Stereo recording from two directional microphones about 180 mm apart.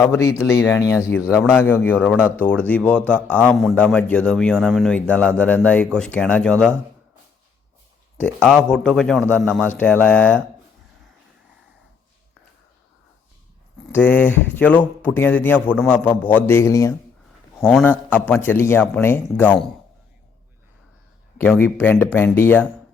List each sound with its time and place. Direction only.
0.0 s a man's voice: 15° left (ahead or behind)
8.2 s a man's voice: 5° left (ahead or behind)
13.9 s a man's voice: 10° left (ahead or behind)
21.6 s a man's voice: 10° left (ahead or behind)